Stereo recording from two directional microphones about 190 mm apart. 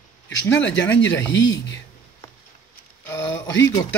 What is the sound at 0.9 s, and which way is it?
Speech, 75° left (ahead or behind).